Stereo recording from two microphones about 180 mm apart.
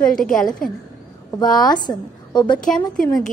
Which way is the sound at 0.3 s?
5° left (ahead or behind).